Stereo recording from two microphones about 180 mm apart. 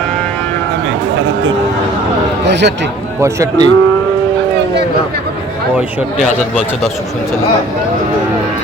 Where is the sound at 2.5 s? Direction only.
75° right (ahead or behind).